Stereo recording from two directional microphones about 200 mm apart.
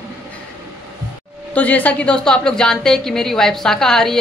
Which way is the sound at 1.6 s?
5° left (ahead or behind).